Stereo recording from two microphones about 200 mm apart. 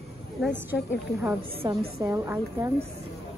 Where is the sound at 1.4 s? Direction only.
25° right (ahead or behind).